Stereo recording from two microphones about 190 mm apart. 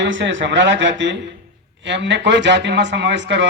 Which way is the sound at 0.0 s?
70° right (ahead or behind).